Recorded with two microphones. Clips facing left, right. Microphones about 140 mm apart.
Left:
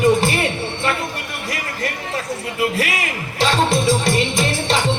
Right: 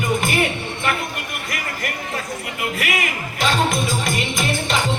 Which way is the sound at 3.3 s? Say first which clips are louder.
Left 3 dB; 30° left (ahead or behind).